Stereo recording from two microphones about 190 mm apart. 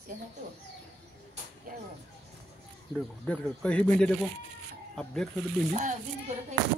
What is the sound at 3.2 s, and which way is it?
A man's voice, 5° left (ahead or behind).